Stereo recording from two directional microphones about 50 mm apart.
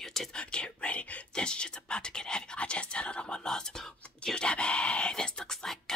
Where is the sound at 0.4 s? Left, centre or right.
Centre.